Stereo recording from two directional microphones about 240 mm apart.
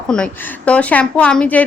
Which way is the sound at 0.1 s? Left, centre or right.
Centre.